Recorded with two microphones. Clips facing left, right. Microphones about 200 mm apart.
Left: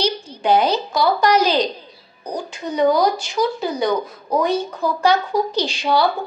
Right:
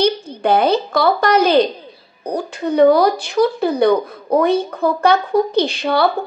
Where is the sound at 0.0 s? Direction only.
55° right (ahead or behind).